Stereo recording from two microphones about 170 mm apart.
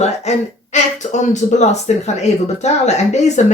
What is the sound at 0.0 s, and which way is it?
Speech, 40° left (ahead or behind).